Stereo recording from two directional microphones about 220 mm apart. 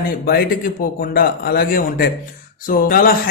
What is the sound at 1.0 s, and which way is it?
A man's voice, 40° left (ahead or behind).